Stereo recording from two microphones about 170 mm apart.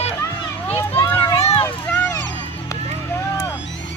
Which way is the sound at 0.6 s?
10° left (ahead or behind).